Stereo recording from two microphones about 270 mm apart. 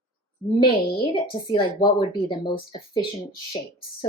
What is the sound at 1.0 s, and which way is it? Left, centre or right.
Speech, centre.